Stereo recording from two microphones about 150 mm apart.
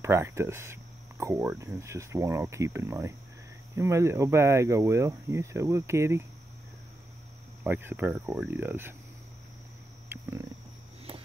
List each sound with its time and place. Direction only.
0.0 s speech: 20° right (ahead or behind)
7.6 s speech: 10° right (ahead or behind)